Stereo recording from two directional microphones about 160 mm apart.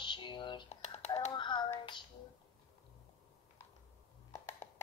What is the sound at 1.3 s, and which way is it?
Music, 30° left (ahead or behind).